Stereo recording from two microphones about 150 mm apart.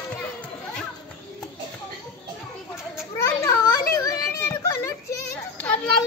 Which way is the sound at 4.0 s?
20° left (ahead or behind).